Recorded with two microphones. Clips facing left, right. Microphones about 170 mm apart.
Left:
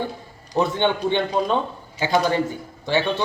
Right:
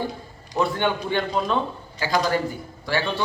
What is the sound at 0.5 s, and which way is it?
Speech, 20° left (ahead or behind).